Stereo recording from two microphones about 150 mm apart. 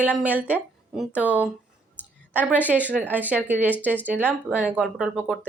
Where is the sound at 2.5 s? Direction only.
10° right (ahead or behind).